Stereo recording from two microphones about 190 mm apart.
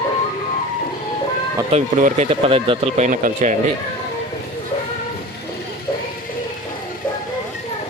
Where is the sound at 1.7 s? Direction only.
40° right (ahead or behind).